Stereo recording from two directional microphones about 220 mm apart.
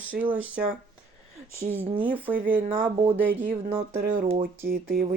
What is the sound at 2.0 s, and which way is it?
Speech, 10° right (ahead or behind).